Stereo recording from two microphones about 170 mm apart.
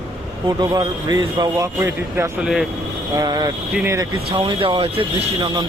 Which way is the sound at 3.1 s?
20° right (ahead or behind).